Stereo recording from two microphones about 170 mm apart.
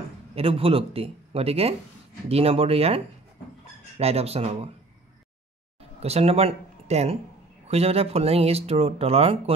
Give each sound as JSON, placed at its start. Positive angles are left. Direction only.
{"t": 0.3, "sound": "speech", "side_deg": -35}
{"t": 4.0, "sound": "speech", "side_deg": -35}
{"t": 5.9, "sound": "speech", "side_deg": -40}